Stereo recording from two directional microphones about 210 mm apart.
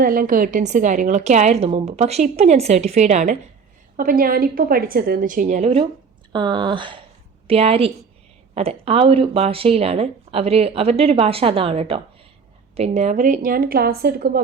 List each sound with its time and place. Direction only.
0.0 s a woman's voice: 45° right (ahead or behind)